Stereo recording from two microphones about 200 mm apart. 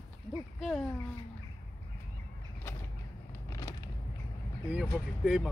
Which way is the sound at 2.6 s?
10° left (ahead or behind).